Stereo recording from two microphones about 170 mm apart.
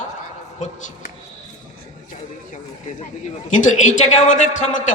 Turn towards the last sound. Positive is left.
turn(degrees=45)  # may be behind; listen again after turning